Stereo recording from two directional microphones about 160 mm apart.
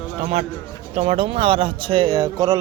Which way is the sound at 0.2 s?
40° right (ahead or behind).